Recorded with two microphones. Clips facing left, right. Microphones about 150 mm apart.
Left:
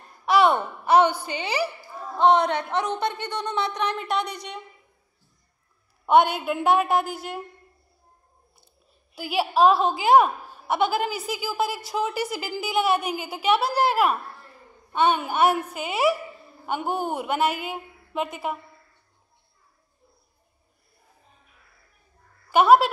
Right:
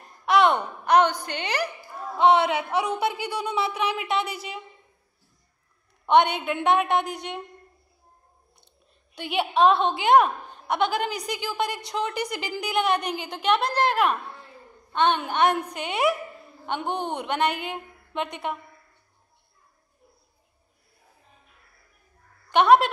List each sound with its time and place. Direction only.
0.2 s a sound: centre (ahead or behind)
0.7 s a woman's voice: 5° left (ahead or behind)
2.0 s speech: centre (ahead or behind)
6.0 s speech: 5° left (ahead or behind)
9.1 s a woman's voice: centre (ahead or behind)
22.5 s a woman's voice: 5° left (ahead or behind)